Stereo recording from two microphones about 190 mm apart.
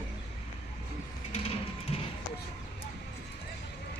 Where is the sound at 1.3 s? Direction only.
30° left (ahead or behind).